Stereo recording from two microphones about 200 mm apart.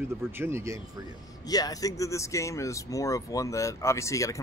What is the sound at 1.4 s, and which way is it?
Speech, 20° left (ahead or behind).